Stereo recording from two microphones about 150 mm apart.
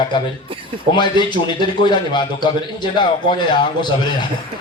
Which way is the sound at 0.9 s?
30° left (ahead or behind).